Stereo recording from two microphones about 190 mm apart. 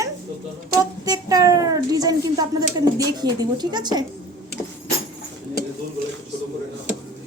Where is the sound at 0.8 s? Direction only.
20° right (ahead or behind).